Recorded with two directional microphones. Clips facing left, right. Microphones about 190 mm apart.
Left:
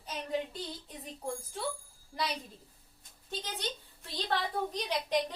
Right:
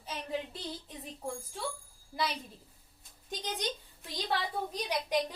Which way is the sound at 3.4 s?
15° right (ahead or behind).